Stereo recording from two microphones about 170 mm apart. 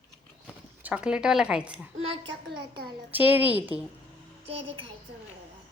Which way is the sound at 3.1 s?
10° right (ahead or behind).